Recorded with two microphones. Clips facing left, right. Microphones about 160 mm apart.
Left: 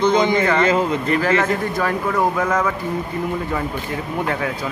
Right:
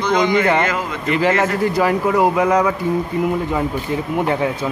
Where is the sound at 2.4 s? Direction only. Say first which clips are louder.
Right 4 dB; 15° right (ahead or behind).